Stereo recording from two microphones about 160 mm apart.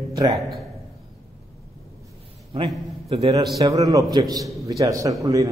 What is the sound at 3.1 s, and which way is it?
Speech, 40° right (ahead or behind).